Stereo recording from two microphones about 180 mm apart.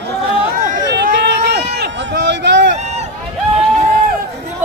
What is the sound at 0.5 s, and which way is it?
Chatter, 50° right (ahead or behind).